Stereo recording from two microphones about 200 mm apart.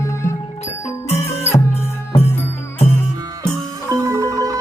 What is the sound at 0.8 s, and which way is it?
Music, 35° left (ahead or behind).